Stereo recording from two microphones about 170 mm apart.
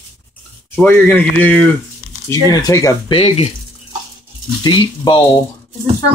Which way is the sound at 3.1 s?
35° left (ahead or behind).